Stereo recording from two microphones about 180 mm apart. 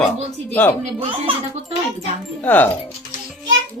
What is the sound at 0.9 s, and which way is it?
Speech, 30° right (ahead or behind).